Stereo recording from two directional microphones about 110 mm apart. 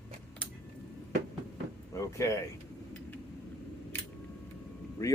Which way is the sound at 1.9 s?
25° left (ahead or behind).